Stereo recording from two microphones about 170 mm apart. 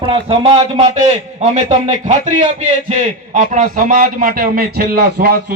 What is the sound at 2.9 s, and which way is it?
A man's voice, 40° right (ahead or behind).